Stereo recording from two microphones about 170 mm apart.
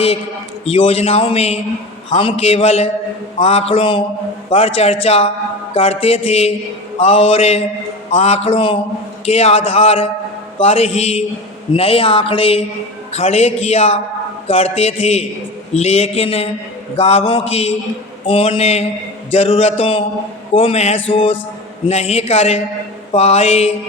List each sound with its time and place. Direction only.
0.6 s a man's voice: 35° left (ahead or behind)